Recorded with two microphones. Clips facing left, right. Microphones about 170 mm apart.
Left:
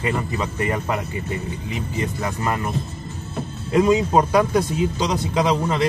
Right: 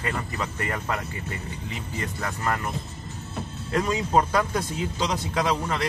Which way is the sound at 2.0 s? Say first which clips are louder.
Left 4 dB; 20° left (ahead or behind).